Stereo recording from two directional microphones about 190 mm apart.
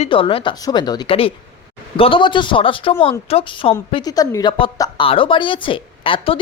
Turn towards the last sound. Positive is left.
turn(degrees=30)  # may be behind; listen again after turning